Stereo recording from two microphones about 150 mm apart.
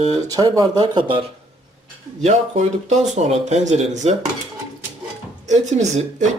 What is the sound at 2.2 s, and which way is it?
Speech, 50° right (ahead or behind).